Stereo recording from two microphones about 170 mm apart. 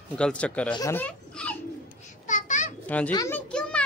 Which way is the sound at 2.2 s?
45° left (ahead or behind).